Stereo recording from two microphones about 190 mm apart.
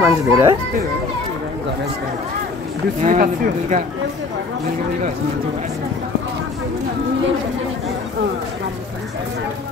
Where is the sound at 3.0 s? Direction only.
45° right (ahead or behind).